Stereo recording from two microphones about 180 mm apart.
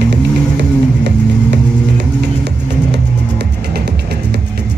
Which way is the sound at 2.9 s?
65° right (ahead or behind).